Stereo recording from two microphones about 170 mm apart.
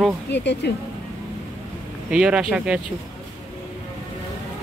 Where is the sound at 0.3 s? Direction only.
85° left.